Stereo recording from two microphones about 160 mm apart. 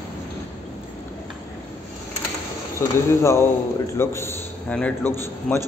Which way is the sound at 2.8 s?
15° left (ahead or behind).